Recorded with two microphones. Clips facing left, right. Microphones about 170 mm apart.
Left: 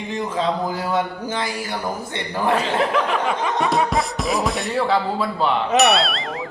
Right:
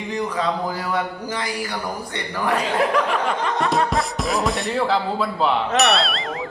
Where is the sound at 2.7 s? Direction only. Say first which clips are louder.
Even; centre (ahead or behind).